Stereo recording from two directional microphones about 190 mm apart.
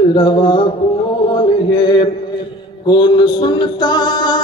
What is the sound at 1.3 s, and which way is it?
Chant, 25° left (ahead or behind).